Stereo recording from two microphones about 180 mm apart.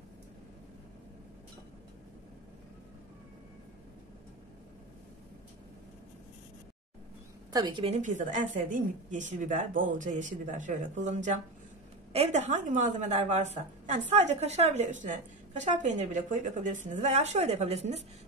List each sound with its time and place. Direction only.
7.5 s a woman's voice: 25° right (ahead or behind)